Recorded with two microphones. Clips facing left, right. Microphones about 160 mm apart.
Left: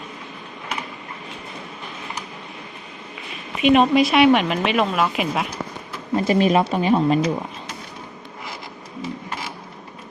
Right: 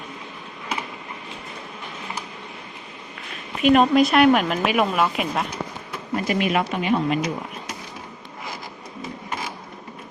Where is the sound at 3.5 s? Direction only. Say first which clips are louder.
Left 1 dB; centre (ahead or behind).